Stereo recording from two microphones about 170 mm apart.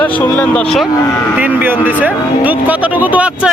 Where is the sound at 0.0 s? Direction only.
10° left (ahead or behind).